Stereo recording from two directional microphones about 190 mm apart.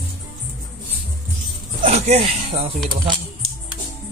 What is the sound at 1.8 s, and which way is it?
Speech, 30° right (ahead or behind).